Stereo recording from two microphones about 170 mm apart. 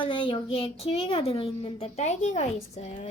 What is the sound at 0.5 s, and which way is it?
A woman's voice, 35° left (ahead or behind).